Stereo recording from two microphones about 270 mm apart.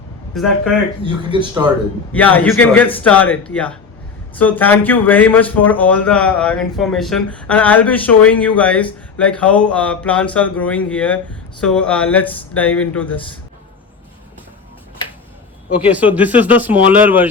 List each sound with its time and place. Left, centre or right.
0.3 s a man's voice: centre
1.0 s speech: centre
2.1 s a man's voice: centre
15.9 s a man's voice: centre